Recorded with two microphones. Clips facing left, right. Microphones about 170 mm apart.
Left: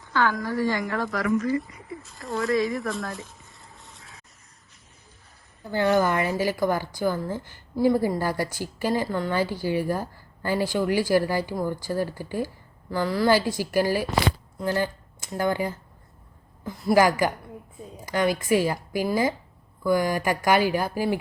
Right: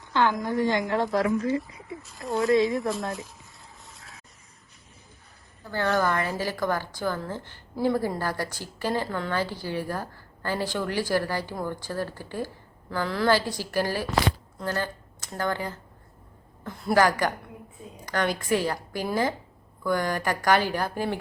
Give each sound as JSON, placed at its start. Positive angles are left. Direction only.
{"t": 0.0, "sound": "a woman's voice", "side_deg": -20}
{"t": 2.0, "sound": "speech", "side_deg": 0}
{"t": 3.1, "sound": "a sound", "side_deg": 0}
{"t": 5.7, "sound": "a woman's voice", "side_deg": 15}
{"t": 16.6, "sound": "a woman's voice", "side_deg": 5}